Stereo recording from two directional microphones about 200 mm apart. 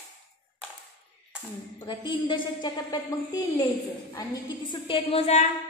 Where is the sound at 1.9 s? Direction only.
25° left (ahead or behind).